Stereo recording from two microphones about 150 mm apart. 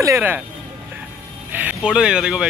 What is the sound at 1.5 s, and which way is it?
Speech, 10° right (ahead or behind).